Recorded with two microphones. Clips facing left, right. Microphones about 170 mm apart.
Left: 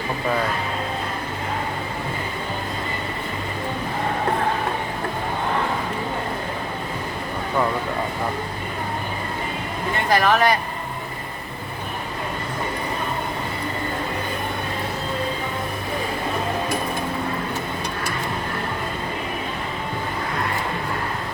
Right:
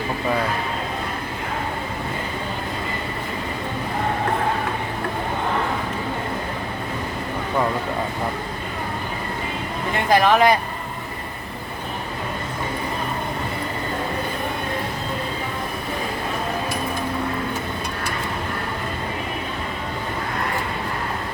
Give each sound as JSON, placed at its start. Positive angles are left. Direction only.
{"t": 10.1, "sound": "speech", "side_deg": -15}